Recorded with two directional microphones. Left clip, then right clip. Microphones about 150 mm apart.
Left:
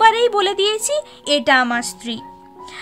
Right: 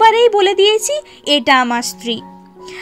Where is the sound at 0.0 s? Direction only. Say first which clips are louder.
Right 4 dB; 5° right (ahead or behind).